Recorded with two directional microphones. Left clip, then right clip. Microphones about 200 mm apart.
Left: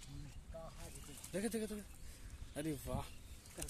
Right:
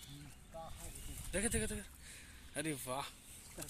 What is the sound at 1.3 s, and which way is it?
Speech, 10° left (ahead or behind).